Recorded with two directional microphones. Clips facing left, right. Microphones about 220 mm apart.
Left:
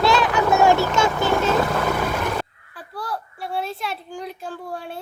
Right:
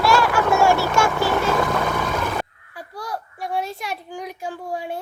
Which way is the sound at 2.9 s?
45° right (ahead or behind).